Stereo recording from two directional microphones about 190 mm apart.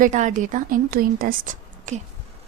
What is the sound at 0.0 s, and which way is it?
A woman's voice, 40° right (ahead or behind).